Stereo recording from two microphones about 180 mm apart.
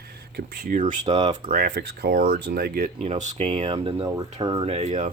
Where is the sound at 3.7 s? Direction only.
25° right (ahead or behind).